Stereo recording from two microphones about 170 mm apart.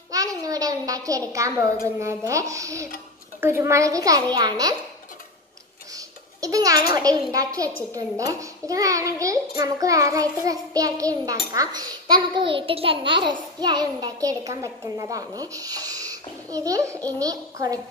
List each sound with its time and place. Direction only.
0.1 s a child's voice: 20° right (ahead or behind)
5.9 s babbling: 20° right (ahead or behind)
6.9 s a child's voice: 20° right (ahead or behind)